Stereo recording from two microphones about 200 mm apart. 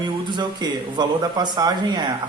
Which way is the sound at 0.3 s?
20° right (ahead or behind).